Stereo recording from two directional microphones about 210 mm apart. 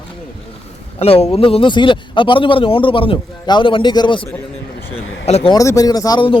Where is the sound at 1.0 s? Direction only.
30° left (ahead or behind).